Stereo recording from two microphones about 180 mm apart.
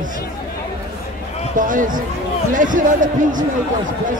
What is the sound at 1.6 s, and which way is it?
Speech, 45° right (ahead or behind).